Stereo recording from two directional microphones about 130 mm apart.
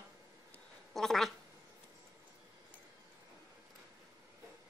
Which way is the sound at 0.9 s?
Centre (ahead or behind).